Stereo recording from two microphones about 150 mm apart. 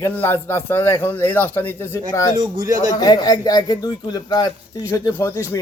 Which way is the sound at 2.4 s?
25° right (ahead or behind).